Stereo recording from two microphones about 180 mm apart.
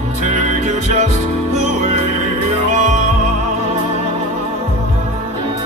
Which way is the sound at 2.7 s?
45° right (ahead or behind).